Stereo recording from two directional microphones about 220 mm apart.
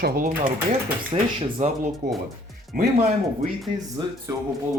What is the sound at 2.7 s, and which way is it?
Speech, 40° right (ahead or behind).